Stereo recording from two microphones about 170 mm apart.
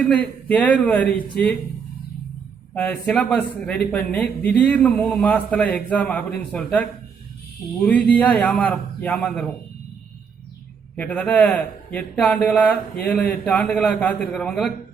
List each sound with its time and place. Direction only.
0.0 s a man's voice: 10° left (ahead or behind)
2.7 s a man's voice: 5° left (ahead or behind)
10.9 s a man's voice: 10° left (ahead or behind)